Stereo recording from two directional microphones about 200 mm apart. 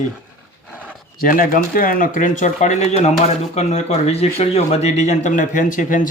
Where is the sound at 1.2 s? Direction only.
45° left (ahead or behind).